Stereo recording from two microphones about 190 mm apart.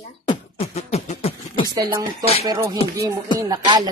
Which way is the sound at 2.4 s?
20° right (ahead or behind).